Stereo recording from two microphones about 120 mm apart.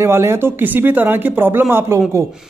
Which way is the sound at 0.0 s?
20° right (ahead or behind).